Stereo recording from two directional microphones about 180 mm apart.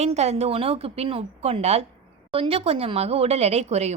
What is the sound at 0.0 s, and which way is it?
A woman's voice, 40° right (ahead or behind).